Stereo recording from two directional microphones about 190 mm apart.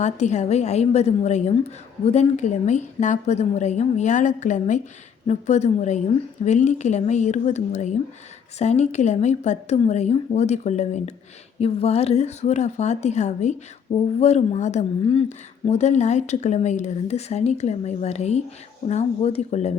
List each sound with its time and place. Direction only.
0.0 s speech: 35° left (ahead or behind)